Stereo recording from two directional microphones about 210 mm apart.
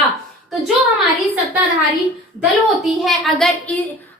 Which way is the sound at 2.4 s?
Centre (ahead or behind).